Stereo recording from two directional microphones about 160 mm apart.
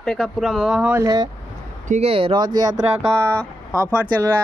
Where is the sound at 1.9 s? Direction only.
40° right (ahead or behind); by 3.2 s 25° right (ahead or behind).